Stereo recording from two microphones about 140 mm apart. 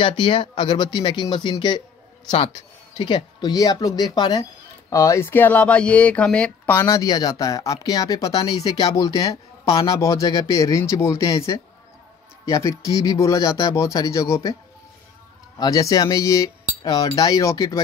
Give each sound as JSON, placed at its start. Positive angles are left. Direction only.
{"t": 0.0, "sound": "speech", "side_deg": 35}
{"t": 6.7, "sound": "speech", "side_deg": 25}
{"t": 15.6, "sound": "speech", "side_deg": 25}